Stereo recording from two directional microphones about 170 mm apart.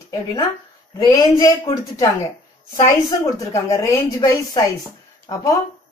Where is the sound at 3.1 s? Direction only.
20° left (ahead or behind).